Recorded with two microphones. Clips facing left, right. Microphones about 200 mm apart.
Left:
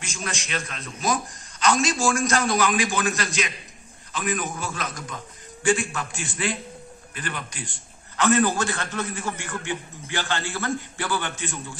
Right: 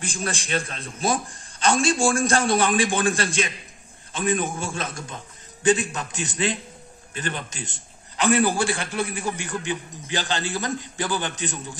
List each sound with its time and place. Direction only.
0.0 s a man's voice: 30° right (ahead or behind)